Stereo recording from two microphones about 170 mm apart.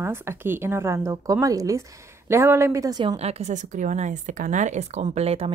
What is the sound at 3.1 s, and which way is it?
A woman's voice, 40° right (ahead or behind).